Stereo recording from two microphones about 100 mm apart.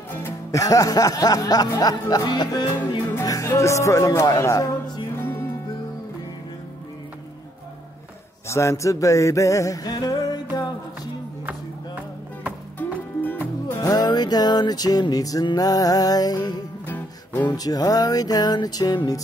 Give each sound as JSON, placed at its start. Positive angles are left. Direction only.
{"t": 0.2, "sound": "speech", "side_deg": 35}
{"t": 1.8, "sound": "music", "side_deg": 40}
{"t": 5.2, "sound": "music", "side_deg": 20}
{"t": 8.5, "sound": "music", "side_deg": 30}
{"t": 12.7, "sound": "music", "side_deg": 15}
{"t": 13.7, "sound": "music", "side_deg": 40}
{"t": 16.8, "sound": "music", "side_deg": 20}
{"t": 17.6, "sound": "music", "side_deg": 40}